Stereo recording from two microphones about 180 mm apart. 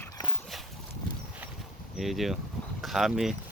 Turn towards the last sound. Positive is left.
turn(degrees=0)  # may be behind; listen again after turning